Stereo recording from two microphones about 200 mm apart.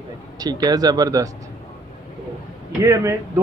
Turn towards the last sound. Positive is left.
turn(degrees=-15)  # may be behind; listen again after turning